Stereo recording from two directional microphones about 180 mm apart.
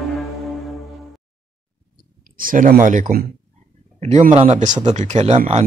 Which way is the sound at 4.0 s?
40° right (ahead or behind).